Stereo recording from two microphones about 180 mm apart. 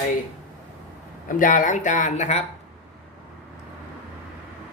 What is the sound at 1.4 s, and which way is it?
Speech, 45° left (ahead or behind).